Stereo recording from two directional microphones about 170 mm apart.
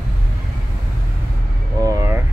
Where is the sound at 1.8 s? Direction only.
15° right (ahead or behind).